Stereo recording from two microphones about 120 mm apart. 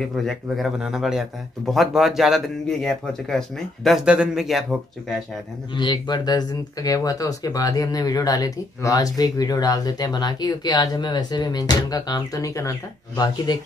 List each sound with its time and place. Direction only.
0.0 s a man's voice: centre (ahead or behind)
5.8 s speech: 40° left (ahead or behind)